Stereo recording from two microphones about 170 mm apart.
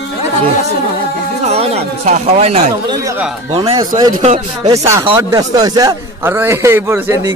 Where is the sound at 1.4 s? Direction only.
35° right (ahead or behind).